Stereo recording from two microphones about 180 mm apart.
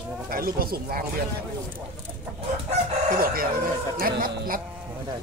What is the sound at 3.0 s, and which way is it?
Speech, 50° right (ahead or behind).